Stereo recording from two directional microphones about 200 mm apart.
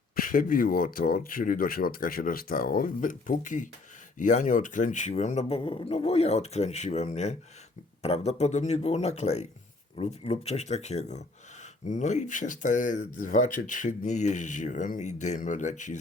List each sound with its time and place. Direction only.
0.2 s speech: 45° left (ahead or behind)